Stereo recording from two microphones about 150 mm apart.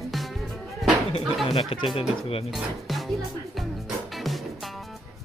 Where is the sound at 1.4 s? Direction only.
35° left (ahead or behind).